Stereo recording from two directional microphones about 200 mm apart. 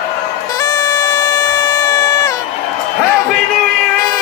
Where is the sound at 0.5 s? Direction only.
20° left (ahead or behind).